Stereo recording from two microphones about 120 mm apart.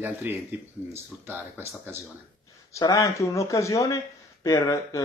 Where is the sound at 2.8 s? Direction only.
25° left (ahead or behind).